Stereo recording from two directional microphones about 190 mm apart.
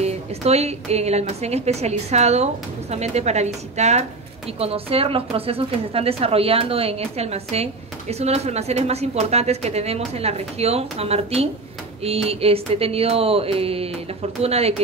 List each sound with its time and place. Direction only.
0.0 s speech: 35° right (ahead or behind)